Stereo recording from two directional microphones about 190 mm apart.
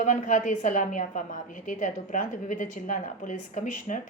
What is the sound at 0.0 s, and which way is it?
A woman's voice, 40° left (ahead or behind).